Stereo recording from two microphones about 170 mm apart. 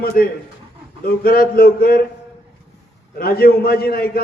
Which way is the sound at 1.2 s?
65° left (ahead or behind).